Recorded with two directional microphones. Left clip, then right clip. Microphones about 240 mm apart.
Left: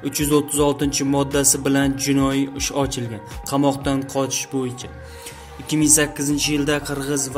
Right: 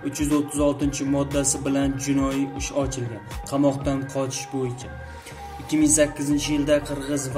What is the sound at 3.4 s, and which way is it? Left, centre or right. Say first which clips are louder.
Speech: left 3 dB; left.